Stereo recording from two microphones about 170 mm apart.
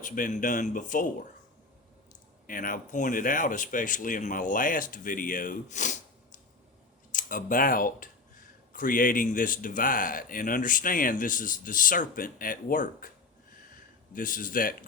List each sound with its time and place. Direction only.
0.0 s speech: 50° left (ahead or behind)
2.5 s speech: 55° left (ahead or behind)
14.1 s speech: 55° left (ahead or behind)